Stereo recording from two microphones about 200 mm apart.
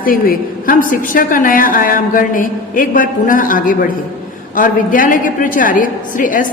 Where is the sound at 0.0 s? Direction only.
45° left (ahead or behind).